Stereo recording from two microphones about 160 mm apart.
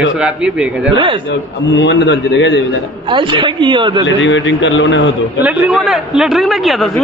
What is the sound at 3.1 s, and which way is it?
Speech, 30° right (ahead or behind).